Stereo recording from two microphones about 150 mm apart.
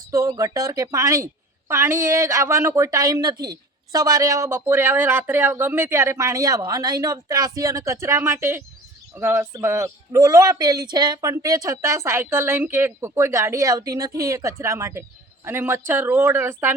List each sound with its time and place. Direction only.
0.1 s a woman's voice: 20° right (ahead or behind)